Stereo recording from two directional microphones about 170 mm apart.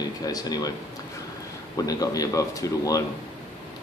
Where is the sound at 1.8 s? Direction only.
20° left (ahead or behind).